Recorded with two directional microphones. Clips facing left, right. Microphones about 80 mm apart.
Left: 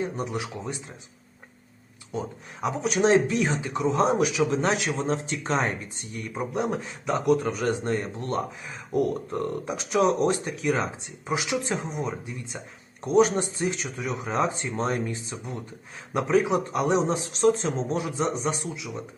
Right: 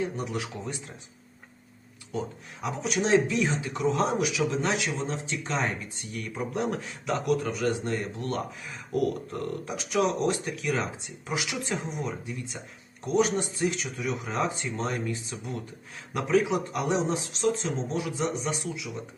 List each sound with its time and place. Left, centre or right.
0.0 s speech: left
2.6 s speech: left
3.9 s speech: left
13.1 s speech: left